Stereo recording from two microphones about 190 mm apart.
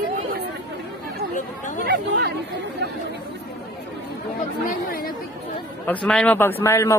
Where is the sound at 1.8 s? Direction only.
55° right (ahead or behind).